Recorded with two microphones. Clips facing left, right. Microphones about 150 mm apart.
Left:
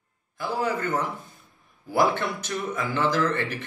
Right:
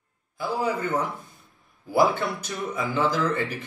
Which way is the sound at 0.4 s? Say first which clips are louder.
Right 1 dB; 10° right (ahead or behind).